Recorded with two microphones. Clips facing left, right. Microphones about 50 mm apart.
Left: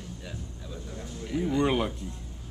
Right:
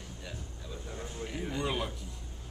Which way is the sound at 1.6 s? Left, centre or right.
Left.